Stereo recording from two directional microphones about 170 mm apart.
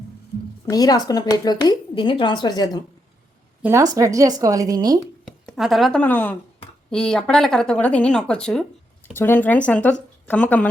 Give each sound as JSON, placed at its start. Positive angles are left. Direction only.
{"t": 0.7, "sound": "speech", "side_deg": 20}
{"t": 3.6, "sound": "speech", "side_deg": -15}
{"t": 5.5, "sound": "speech", "side_deg": 0}